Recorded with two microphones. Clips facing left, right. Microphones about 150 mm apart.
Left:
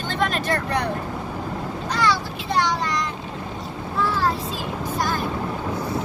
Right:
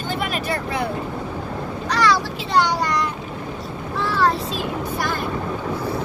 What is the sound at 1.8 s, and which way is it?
Vehicle, 75° right (ahead or behind).